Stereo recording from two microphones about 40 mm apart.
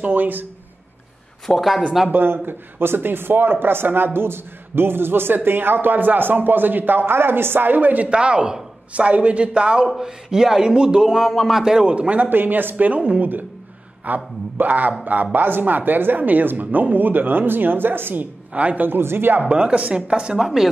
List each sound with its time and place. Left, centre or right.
0.0 s speech: right
1.4 s speech: centre
2.0 s speech: right
8.1 s speech: right
9.9 s speech: centre
11.1 s speech: centre
11.8 s speech: right
12.3 s speech: right
12.7 s speech: right
18.5 s a man's voice: right
18.8 s speech: right
19.5 s speech: right
20.3 s speech: centre